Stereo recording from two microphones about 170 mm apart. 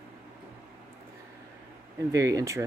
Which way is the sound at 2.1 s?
20° right (ahead or behind).